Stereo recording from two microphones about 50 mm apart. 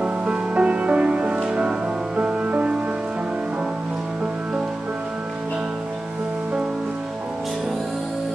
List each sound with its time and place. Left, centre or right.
0.0 s music: right